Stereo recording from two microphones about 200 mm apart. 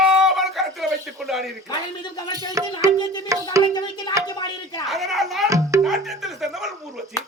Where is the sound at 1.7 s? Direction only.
20° left (ahead or behind).